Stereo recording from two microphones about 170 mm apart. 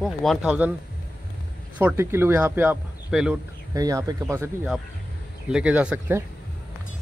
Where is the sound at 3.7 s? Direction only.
20° right (ahead or behind).